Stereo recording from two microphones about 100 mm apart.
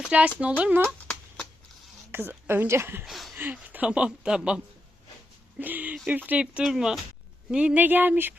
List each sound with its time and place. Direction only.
0.1 s speech: 15° right (ahead or behind)
2.1 s a woman's voice: 20° right (ahead or behind)
3.1 s a sound: centre (ahead or behind)
3.3 s speech: 15° right (ahead or behind)